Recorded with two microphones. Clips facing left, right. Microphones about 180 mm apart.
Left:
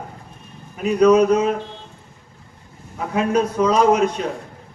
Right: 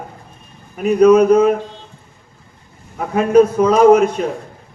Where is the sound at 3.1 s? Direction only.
50° right (ahead or behind).